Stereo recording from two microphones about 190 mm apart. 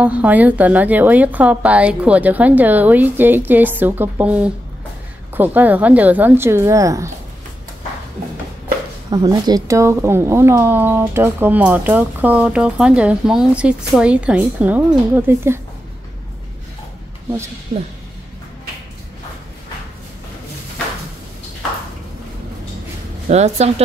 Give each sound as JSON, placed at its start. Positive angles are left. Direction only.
{"t": 0.0, "sound": "speech", "side_deg": -5}
{"t": 9.1, "sound": "speech", "side_deg": -20}
{"t": 23.2, "sound": "speech", "side_deg": -35}